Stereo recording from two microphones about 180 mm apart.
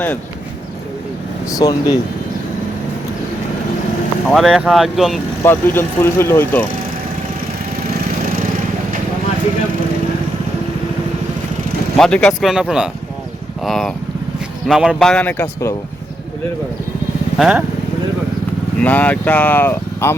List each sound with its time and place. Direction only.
1.5 s speech: 20° left (ahead or behind)
4.3 s speech: centre (ahead or behind)
5.4 s speech: 10° left (ahead or behind)
11.9 s speech: 5° left (ahead or behind)
17.3 s speech: centre (ahead or behind)
18.8 s speech: 10° left (ahead or behind)